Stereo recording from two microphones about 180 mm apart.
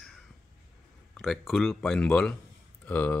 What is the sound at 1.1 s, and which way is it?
Speech, centre (ahead or behind).